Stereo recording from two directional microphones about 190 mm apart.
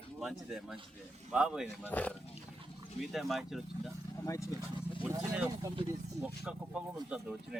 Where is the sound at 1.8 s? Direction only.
10° left (ahead or behind).